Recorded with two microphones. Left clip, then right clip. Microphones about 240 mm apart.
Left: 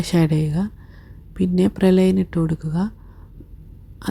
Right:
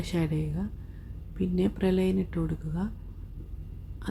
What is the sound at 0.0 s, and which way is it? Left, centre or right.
Speech, left.